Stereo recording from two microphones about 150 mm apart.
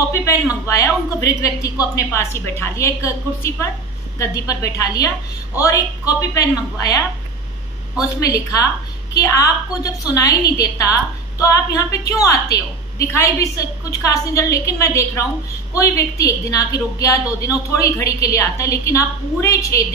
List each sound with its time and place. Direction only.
0.1 s speech: 20° left (ahead or behind)
8.0 s speech: 20° left (ahead or behind)